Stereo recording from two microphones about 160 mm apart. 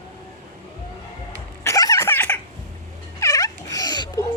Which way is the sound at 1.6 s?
20° left (ahead or behind).